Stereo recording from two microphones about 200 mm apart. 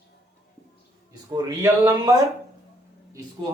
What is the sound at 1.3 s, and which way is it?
Speech, 15° right (ahead or behind).